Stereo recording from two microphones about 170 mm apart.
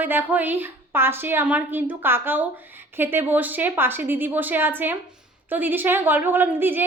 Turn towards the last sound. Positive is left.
turn(degrees=-10)  # may be behind; listen again after turning